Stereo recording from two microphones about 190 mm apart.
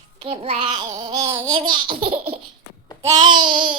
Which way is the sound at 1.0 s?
25° right (ahead or behind).